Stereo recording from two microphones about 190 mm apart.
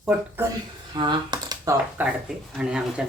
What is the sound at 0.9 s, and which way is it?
Computer keyboard, 20° right (ahead or behind).